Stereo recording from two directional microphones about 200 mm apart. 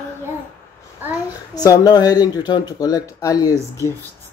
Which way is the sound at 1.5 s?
20° left (ahead or behind).